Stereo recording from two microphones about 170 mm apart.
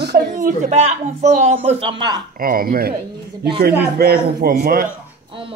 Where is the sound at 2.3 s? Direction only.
60° right (ahead or behind).